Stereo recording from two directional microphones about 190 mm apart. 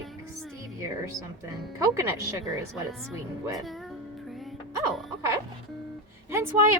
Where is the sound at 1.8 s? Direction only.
15° right (ahead or behind).